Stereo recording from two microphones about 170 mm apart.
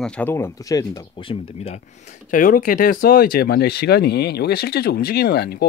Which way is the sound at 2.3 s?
50° left (ahead or behind).